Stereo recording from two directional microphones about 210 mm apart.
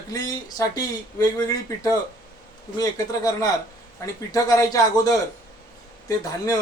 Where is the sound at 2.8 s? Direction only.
15° left (ahead or behind).